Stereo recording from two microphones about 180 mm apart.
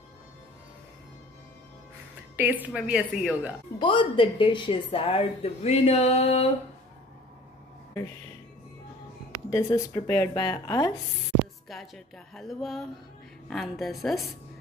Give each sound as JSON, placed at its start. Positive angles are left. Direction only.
{"t": 2.3, "sound": "a woman's voice", "side_deg": -10}
{"t": 3.8, "sound": "a woman's voice", "side_deg": 25}
{"t": 9.5, "sound": "a woman's voice", "side_deg": 15}
{"t": 11.7, "sound": "a woman's voice", "side_deg": 0}